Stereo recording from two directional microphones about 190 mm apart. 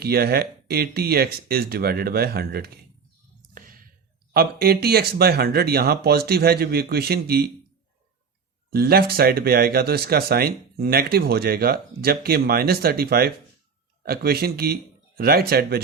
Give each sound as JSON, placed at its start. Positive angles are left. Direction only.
{"t": 0.0, "sound": "speech", "side_deg": -55}
{"t": 4.6, "sound": "speech", "side_deg": -55}
{"t": 8.7, "sound": "speech", "side_deg": -55}